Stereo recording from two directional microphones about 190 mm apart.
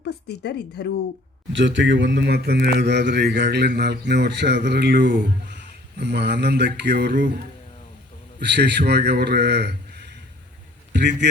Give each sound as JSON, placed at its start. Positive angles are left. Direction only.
{"t": 0.0, "sound": "a woman's voice", "side_deg": 60}
{"t": 1.5, "sound": "speech", "side_deg": -75}
{"t": 8.4, "sound": "speech", "side_deg": -65}
{"t": 10.9, "sound": "speech", "side_deg": -65}